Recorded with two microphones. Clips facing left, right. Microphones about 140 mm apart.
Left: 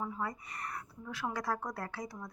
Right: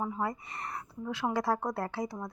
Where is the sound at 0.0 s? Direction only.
25° right (ahead or behind).